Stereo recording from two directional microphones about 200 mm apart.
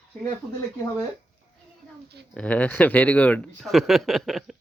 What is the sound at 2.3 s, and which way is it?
Speech, 5° left (ahead or behind).